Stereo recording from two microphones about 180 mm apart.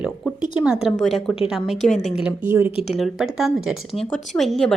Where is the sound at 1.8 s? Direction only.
40° left (ahead or behind).